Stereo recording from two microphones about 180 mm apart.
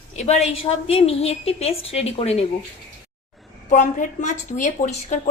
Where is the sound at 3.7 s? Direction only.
45° left (ahead or behind).